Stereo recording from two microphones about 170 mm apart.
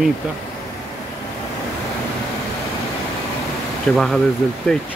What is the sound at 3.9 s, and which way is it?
Speech, centre (ahead or behind).